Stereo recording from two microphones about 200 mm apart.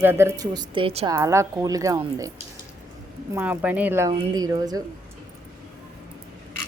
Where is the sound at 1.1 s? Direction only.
15° right (ahead or behind).